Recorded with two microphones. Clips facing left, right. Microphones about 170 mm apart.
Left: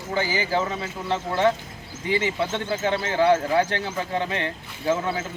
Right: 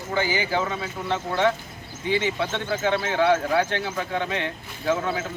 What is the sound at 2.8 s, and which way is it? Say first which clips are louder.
Speech: even; 35° left (ahead or behind).